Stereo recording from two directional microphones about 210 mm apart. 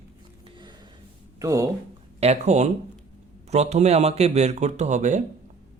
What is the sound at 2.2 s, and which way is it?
Speech, 30° right (ahead or behind).